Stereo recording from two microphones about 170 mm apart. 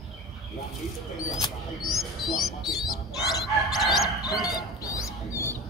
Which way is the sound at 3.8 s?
Centre (ahead or behind).